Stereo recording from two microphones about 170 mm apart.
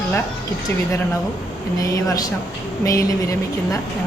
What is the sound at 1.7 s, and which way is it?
Speech, 20° left (ahead or behind).